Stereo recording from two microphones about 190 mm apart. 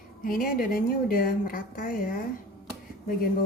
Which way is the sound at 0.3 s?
50° left (ahead or behind).